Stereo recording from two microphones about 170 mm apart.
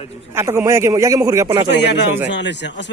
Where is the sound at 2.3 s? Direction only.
90° left.